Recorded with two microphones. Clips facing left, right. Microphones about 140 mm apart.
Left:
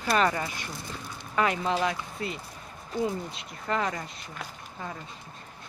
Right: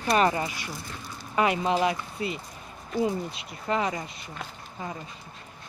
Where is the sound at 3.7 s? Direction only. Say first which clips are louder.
Right 2 dB; 10° right (ahead or behind).